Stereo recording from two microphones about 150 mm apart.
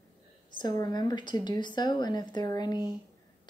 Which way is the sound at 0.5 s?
30° left (ahead or behind).